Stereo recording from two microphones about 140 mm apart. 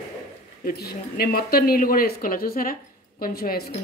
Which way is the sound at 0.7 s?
90° left.